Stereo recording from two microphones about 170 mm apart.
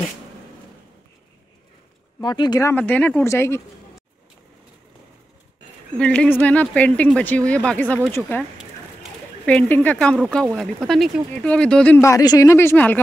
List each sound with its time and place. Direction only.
2.2 s speech: 25° left (ahead or behind)
2.7 s speech: 10° left (ahead or behind)
5.9 s speech: 5° left (ahead or behind)
9.5 s speech: 5° left (ahead or behind)